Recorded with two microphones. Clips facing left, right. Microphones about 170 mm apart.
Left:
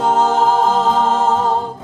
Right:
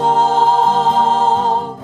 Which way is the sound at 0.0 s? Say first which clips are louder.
Right 1 dB; 30° right (ahead or behind).